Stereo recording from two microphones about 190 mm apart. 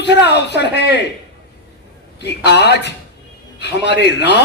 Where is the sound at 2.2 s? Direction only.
60° left (ahead or behind).